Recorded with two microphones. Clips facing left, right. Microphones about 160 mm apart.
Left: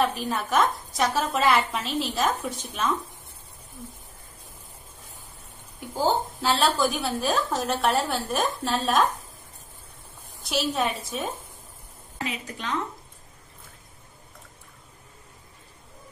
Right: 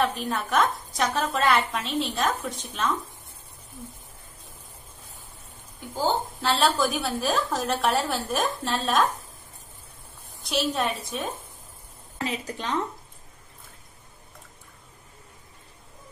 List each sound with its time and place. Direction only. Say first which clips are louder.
0.0 s a woman's voice: left 1 dB; centre (ahead or behind)
5.9 s a woman's voice: left 2 dB; centre (ahead or behind)
10.4 s a woman's voice: even; centre (ahead or behind)
12.2 s a woman's voice: right 2 dB; 35° right (ahead or behind)